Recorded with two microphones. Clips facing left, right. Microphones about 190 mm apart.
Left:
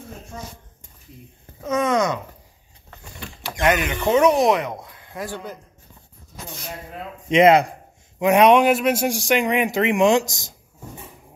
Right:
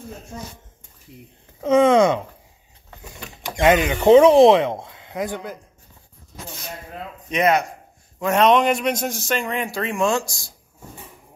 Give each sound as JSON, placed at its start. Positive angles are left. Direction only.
{"t": 1.6, "sound": "speech", "side_deg": -30}
{"t": 7.2, "sound": "speech", "side_deg": 25}
{"t": 8.2, "sound": "a man's voice", "side_deg": 15}